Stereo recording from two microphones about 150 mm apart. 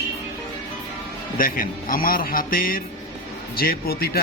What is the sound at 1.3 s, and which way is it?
A man's voice, 70° left (ahead or behind).